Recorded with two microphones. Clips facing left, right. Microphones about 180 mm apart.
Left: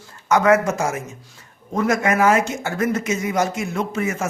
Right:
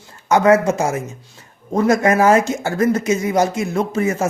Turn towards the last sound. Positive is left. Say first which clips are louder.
# right 5 dB
turn(degrees=-35)  # may be behind; listen again after turning